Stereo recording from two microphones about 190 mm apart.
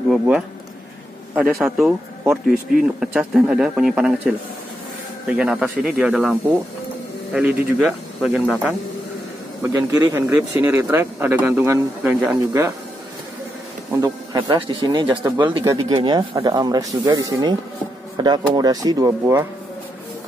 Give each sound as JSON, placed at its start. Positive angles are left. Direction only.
{"t": 1.3, "sound": "speech", "side_deg": 0}
{"t": 3.0, "sound": "speech", "side_deg": -5}
{"t": 7.3, "sound": "speech", "side_deg": -5}
{"t": 13.9, "sound": "speech", "side_deg": -20}